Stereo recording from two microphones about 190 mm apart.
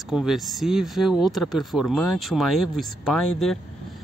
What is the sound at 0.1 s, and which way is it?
Speech, centre (ahead or behind).